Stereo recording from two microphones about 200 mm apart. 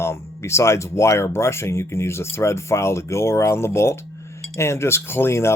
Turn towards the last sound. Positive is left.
turn(degrees=15)  # may be behind; listen again after turning